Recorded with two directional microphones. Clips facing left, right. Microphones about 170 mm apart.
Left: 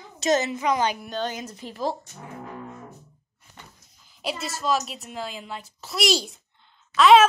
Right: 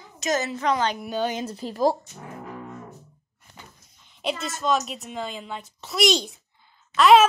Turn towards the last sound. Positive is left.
turn(degrees=0)  # may be behind; listen again after turning